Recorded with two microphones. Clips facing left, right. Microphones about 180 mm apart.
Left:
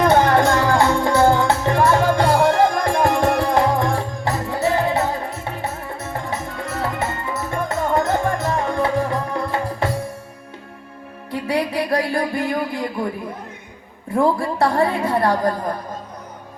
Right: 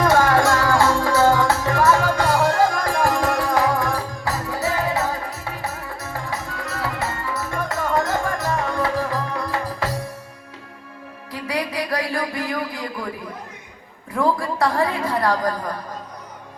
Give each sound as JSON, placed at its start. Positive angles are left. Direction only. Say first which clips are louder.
{"t": 0.0, "sound": "music", "louder": "left 2 dB", "side_deg": 20}
{"t": 11.3, "sound": "music", "louder": "left 5 dB", "side_deg": 25}
{"t": 14.1, "sound": "a sound", "louder": "left 3 dB", "side_deg": 30}